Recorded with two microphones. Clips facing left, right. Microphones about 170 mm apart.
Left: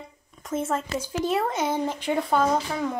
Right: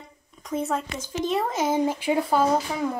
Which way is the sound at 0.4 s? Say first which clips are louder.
Even; centre (ahead or behind).